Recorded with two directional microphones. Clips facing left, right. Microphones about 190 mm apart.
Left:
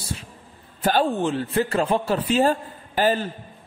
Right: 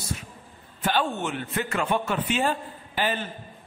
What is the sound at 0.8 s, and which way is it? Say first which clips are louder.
A man's voice: left 5 dB; 35° left (ahead or behind).